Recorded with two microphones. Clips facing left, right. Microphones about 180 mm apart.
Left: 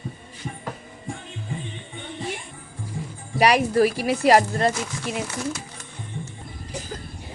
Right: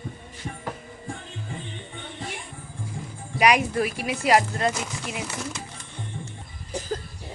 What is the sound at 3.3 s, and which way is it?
Speech, 35° left (ahead or behind).